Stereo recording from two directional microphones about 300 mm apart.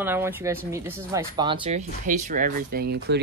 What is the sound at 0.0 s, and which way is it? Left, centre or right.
Speech, centre.